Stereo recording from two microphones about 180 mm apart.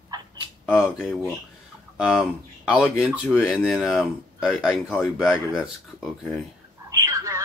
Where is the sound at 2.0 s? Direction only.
5° right (ahead or behind).